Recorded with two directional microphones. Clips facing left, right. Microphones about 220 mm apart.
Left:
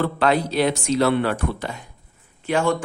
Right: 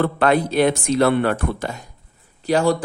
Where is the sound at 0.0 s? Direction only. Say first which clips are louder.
Right 2 dB; 55° right (ahead or behind).